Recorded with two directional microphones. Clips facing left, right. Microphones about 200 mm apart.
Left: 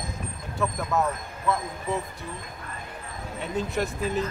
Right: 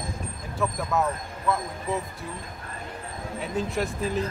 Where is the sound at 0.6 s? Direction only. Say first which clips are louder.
Even; centre (ahead or behind).